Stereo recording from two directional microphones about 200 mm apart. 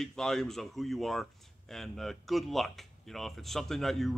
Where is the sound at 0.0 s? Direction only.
Centre (ahead or behind).